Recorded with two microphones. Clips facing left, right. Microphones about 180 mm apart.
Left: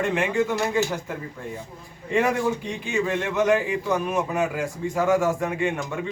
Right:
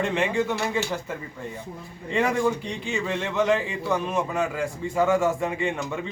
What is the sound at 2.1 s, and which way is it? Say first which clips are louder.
A man's voice: left 1 dB; 10° left (ahead or behind).